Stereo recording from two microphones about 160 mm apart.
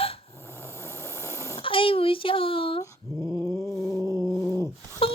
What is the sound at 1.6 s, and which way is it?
A child's voice, 35° left (ahead or behind).